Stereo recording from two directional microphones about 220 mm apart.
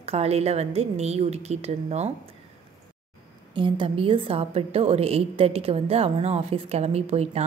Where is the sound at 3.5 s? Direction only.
20° right (ahead or behind).